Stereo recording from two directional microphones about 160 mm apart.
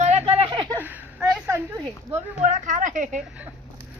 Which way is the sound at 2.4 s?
50° right (ahead or behind).